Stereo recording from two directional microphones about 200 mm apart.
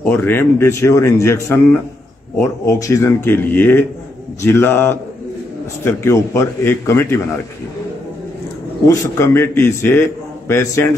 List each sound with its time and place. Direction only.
0.0 s a man's voice: 10° left (ahead or behind)
8.8 s a man's voice: 15° left (ahead or behind)